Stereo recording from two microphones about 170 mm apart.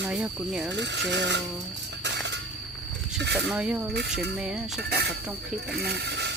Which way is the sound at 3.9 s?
80° right.